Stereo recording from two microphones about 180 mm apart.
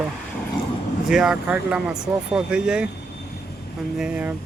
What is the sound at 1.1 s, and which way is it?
Speech, 5° right (ahead or behind).